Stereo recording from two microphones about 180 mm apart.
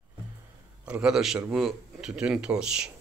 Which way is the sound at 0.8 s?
5° right (ahead or behind).